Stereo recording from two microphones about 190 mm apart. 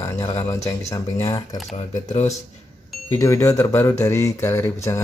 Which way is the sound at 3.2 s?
15° left (ahead or behind).